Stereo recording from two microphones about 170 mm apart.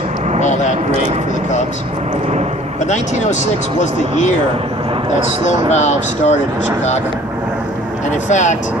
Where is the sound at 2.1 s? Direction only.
40° right (ahead or behind).